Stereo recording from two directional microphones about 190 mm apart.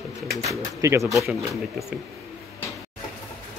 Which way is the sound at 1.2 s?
Centre (ahead or behind).